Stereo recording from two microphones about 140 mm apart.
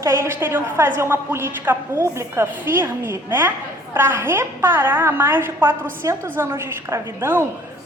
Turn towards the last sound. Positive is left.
turn(degrees=-15)  # may be behind; listen again after turning